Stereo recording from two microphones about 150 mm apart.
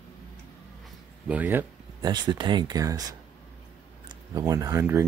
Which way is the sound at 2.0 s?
30° right (ahead or behind).